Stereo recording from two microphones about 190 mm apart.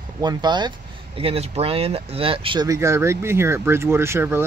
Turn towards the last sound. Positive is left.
turn(degrees=-10)  # may be behind; listen again after turning